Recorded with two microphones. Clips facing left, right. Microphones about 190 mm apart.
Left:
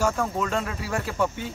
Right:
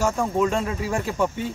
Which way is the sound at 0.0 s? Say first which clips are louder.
Right 3 dB; 10° right (ahead or behind).